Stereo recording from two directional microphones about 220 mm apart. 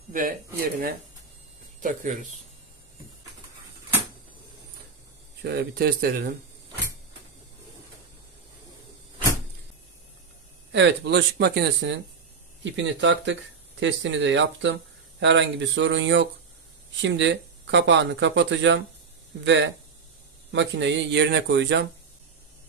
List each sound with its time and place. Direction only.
0.1 s speech: 40° right (ahead or behind)
5.4 s speech: 45° right (ahead or behind)
10.7 s speech: 55° right (ahead or behind)